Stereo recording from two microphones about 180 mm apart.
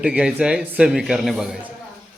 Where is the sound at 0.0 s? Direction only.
5° right (ahead or behind).